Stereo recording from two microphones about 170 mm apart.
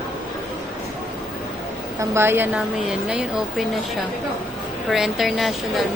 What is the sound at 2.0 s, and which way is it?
A woman's voice, 15° right (ahead or behind).